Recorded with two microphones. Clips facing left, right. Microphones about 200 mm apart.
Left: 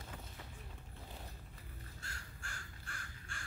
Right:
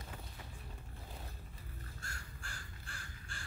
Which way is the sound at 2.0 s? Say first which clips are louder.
Right 2 dB; 45° right (ahead or behind).